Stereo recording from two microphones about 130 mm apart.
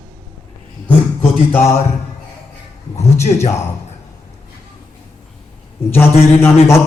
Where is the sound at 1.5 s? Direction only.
20° left (ahead or behind).